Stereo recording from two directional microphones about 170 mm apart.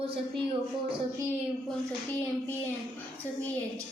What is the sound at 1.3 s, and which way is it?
A child's voice, 10° left (ahead or behind).